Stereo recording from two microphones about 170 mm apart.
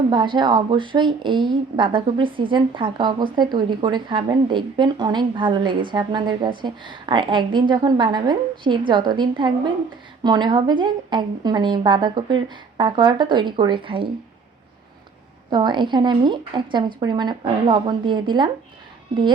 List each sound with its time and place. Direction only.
0.1 s a woman's voice: 30° right (ahead or behind)
15.4 s a woman's voice: 25° right (ahead or behind)